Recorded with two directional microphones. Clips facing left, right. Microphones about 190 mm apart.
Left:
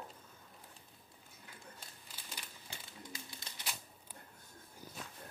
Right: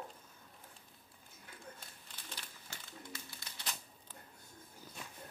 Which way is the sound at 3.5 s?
25° left (ahead or behind).